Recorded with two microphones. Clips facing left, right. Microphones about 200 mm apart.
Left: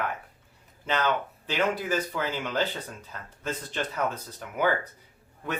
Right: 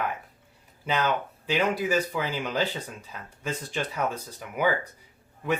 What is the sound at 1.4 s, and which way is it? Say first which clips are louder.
Speech: right 2 dB; 10° right (ahead or behind).